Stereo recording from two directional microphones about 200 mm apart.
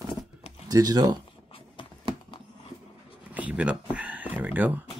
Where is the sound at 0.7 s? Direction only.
20° right (ahead or behind).